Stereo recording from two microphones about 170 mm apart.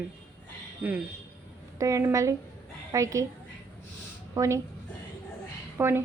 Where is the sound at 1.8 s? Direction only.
20° right (ahead or behind).